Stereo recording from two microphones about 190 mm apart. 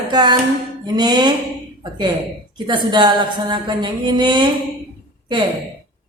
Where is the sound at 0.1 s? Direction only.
25° right (ahead or behind).